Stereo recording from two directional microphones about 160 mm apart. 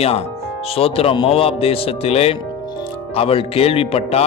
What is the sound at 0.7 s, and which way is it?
A man's voice, 40° left (ahead or behind).